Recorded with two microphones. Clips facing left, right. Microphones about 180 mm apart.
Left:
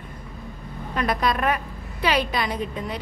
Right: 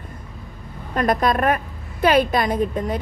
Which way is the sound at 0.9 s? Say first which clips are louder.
Right 5 dB; 45° right (ahead or behind).